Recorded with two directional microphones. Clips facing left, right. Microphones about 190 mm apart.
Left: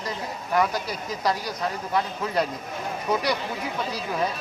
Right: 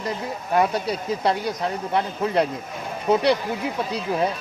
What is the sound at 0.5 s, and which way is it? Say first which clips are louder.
Speech: right 3 dB; 30° right (ahead or behind).